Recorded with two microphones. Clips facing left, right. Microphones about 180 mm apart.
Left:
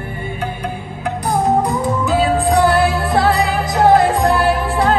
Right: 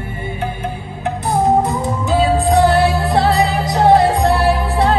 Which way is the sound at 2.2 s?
30° right (ahead or behind).